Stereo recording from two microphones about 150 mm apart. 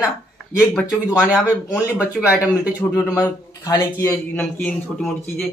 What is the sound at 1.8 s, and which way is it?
Speech, 10° right (ahead or behind).